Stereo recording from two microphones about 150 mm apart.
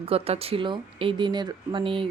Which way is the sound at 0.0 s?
40° right (ahead or behind).